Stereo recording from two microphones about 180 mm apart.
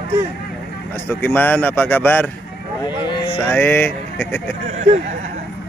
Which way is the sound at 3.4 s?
10° left (ahead or behind).